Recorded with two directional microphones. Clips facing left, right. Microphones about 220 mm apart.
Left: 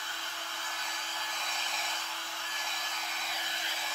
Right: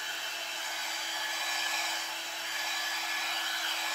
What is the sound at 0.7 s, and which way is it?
Vacuum cleaner, 10° right (ahead or behind).